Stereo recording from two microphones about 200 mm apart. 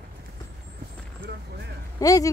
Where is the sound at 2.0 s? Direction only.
15° left (ahead or behind).